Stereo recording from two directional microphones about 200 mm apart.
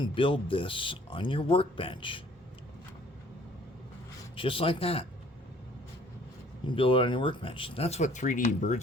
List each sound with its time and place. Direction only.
0.0 s speech: 25° left (ahead or behind)
4.4 s speech: 25° left (ahead or behind)
6.7 s speech: 25° left (ahead or behind)